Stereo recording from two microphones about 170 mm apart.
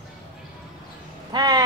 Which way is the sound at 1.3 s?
25° right (ahead or behind).